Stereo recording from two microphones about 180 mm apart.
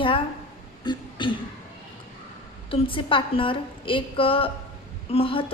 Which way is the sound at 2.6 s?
30° left (ahead or behind).